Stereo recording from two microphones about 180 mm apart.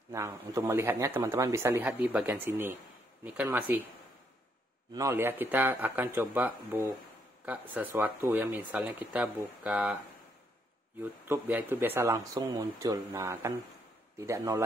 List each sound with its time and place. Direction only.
0.1 s speech: 15° right (ahead or behind)
4.9 s speech: 15° right (ahead or behind)
11.0 s speech: 10° right (ahead or behind)